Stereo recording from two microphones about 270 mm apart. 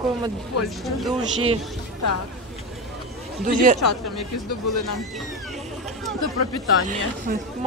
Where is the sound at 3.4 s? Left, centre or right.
Right.